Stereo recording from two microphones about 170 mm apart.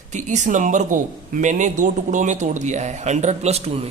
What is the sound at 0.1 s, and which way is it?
Speech, 45° right (ahead or behind).